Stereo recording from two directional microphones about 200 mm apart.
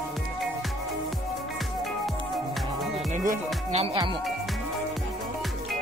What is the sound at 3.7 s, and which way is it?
Speech, 25° right (ahead or behind).